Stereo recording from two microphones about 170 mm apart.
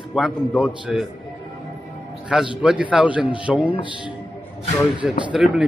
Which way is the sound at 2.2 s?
5° right (ahead or behind).